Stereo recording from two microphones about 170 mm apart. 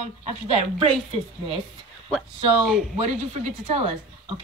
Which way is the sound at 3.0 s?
40° right (ahead or behind).